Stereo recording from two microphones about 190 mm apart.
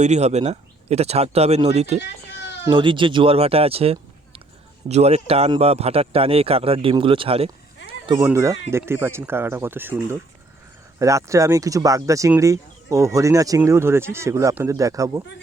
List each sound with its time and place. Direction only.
0.0 s speech: 35° right (ahead or behind)
2.0 s a sound: 65° left (ahead or behind)
2.6 s speech: 25° right (ahead or behind)
8.2 s speech: 15° right (ahead or behind)